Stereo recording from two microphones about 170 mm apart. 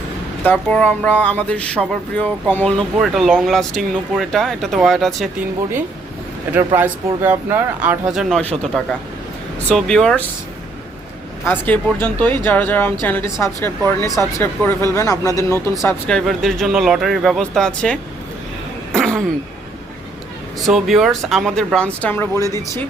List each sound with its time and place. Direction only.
0.4 s speech: 10° left (ahead or behind)
6.7 s speech: 10° right (ahead or behind)
11.4 s a woman's voice: 10° left (ahead or behind)
16.0 s speech: 5° left (ahead or behind)
18.9 s throat clearing: 5° left (ahead or behind)
20.7 s speech: centre (ahead or behind)